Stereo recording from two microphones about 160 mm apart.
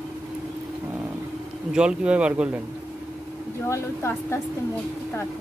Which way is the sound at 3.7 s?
15° left (ahead or behind).